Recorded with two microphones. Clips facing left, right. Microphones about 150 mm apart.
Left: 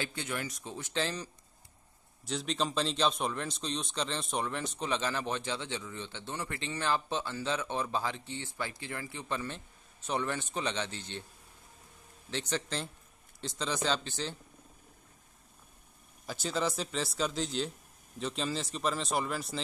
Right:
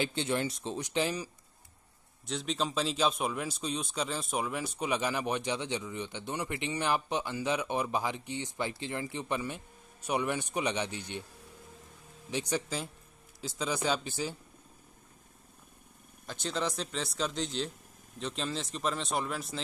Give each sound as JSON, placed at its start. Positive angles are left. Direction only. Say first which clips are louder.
{"t": 0.0, "sound": "speech", "louder": "right 6 dB", "side_deg": -25}
{"t": 2.2, "sound": "a man's voice", "louder": "even", "side_deg": 0}
{"t": 12.3, "sound": "a man's voice", "louder": "right 2 dB", "side_deg": -10}
{"t": 16.3, "sound": "speech", "louder": "left 1 dB", "side_deg": 5}